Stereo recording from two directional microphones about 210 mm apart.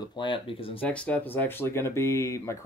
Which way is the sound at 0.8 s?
5° left (ahead or behind).